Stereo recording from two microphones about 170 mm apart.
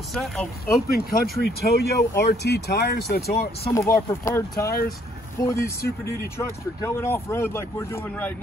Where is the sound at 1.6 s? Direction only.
70° left (ahead or behind).